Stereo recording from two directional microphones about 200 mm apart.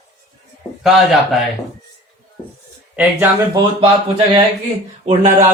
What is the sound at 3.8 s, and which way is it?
Speech, 25° right (ahead or behind).